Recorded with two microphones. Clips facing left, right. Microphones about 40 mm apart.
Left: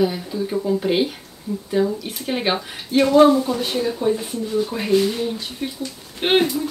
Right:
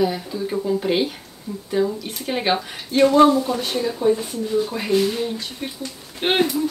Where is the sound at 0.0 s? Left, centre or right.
Centre.